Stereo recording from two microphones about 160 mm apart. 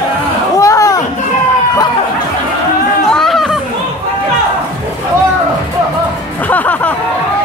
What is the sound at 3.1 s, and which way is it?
Chatter, centre (ahead or behind).